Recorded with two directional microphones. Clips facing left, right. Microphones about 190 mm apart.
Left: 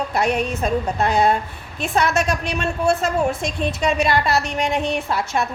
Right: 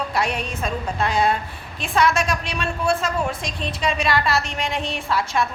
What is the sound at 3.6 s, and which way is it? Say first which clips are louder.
A woman's voice: left 4 dB; 50° left (ahead or behind).